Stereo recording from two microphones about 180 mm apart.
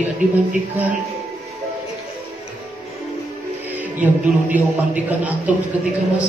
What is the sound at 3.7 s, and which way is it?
A man's voice, 10° right (ahead or behind).